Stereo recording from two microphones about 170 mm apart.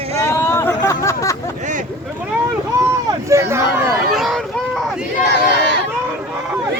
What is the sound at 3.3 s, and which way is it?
Speech, 15° right (ahead or behind).